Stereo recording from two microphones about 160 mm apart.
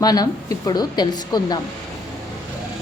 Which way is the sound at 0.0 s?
25° left (ahead or behind).